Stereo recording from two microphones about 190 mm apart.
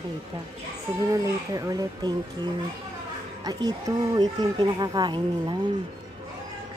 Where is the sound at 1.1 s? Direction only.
15° right (ahead or behind).